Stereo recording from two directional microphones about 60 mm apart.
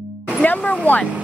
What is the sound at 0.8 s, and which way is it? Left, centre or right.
Speech, left.